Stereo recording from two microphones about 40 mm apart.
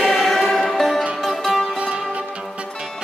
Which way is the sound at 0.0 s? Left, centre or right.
Centre.